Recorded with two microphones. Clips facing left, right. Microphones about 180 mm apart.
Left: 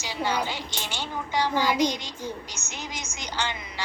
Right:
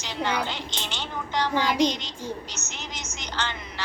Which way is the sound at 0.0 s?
10° left (ahead or behind).